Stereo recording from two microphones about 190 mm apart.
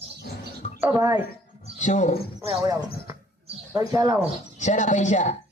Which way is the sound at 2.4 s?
25° right (ahead or behind).